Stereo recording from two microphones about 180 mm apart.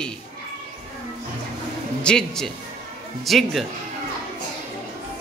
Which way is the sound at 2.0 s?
5° left (ahead or behind).